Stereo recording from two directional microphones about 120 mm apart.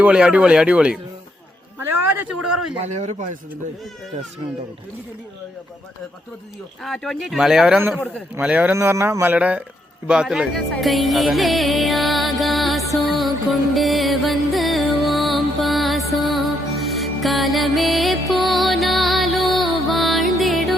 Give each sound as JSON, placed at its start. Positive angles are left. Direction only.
{"t": 0.0, "sound": "speech", "side_deg": -10}
{"t": 2.8, "sound": "a man's voice", "side_deg": -75}
{"t": 6.8, "sound": "speech", "side_deg": 5}
{"t": 8.7, "sound": "speech", "side_deg": -20}
{"t": 10.1, "sound": "music", "side_deg": -5}